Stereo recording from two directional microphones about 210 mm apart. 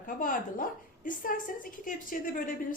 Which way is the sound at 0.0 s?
40° left (ahead or behind).